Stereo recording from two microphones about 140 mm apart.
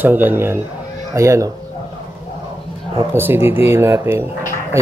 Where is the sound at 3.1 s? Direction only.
15° right (ahead or behind).